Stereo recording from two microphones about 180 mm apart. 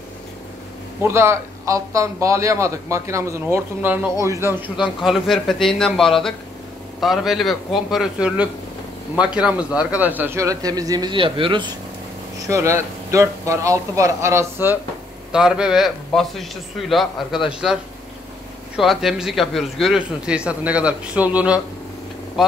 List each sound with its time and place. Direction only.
1.0 s a man's voice: 15° right (ahead or behind)
12.4 s a man's voice: 15° right (ahead or behind)
18.8 s a man's voice: centre (ahead or behind)